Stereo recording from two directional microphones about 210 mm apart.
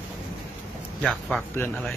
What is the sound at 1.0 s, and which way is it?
Speech, 5° left (ahead or behind).